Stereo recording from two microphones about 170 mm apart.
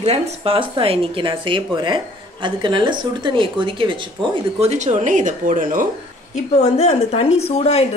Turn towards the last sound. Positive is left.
turn(degrees=35)  # may be behind; listen again after turning